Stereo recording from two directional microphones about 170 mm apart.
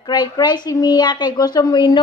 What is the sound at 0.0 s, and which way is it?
A woman's voice, 25° left (ahead or behind).